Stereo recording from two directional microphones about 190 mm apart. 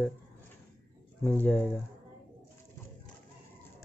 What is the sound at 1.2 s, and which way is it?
Speech, 10° left (ahead or behind).